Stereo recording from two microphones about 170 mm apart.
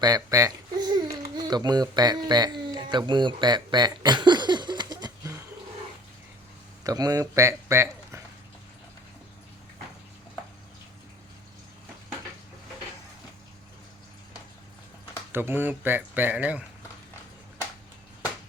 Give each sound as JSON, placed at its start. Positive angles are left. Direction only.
{"t": 0.0, "sound": "babbling", "side_deg": -20}
{"t": 3.1, "sound": "a sound", "side_deg": -25}
{"t": 6.8, "sound": "speech", "side_deg": -20}
{"t": 15.3, "sound": "speech", "side_deg": -15}